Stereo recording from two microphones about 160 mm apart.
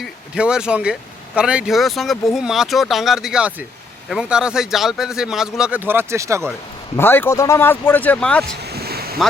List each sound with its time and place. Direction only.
0.0 s a man's voice: 5° right (ahead or behind)
6.9 s speech: 15° left (ahead or behind)
8.6 s a sound: 80° right